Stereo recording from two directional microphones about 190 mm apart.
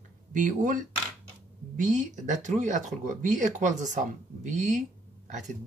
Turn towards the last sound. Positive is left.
turn(degrees=-40)  # may be behind; listen again after turning